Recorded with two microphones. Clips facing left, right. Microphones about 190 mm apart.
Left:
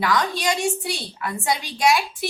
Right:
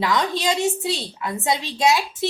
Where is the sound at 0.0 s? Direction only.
25° right (ahead or behind).